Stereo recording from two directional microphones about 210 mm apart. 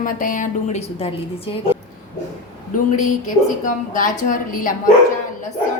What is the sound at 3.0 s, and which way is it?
A woman's voice, 40° left (ahead or behind).